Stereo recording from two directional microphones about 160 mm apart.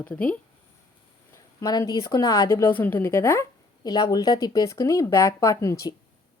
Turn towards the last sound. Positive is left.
turn(degrees=20)  # may be behind; listen again after turning